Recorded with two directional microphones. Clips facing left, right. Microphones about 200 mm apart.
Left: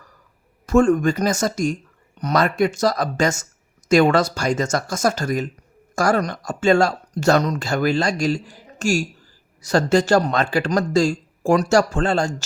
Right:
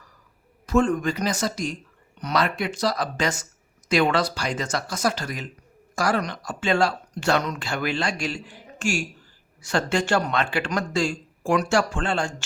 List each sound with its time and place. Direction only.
0.7 s speech: 45° left (ahead or behind)